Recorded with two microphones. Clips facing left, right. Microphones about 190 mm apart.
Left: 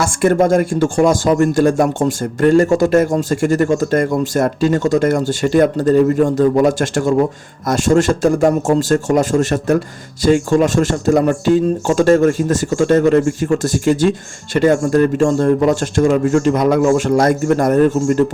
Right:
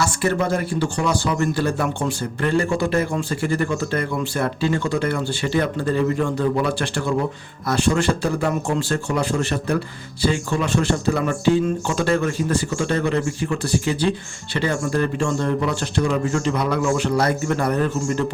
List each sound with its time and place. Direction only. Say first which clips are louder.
0.0 s speech: left 8 dB; 50° left (ahead or behind)